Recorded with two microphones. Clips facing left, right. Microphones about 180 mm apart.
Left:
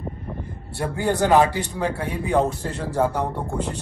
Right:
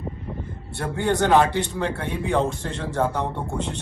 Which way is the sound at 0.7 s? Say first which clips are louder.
Even; 10° left (ahead or behind).